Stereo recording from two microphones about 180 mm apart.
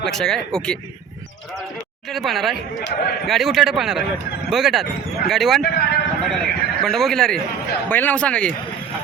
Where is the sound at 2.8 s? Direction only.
65° left (ahead or behind).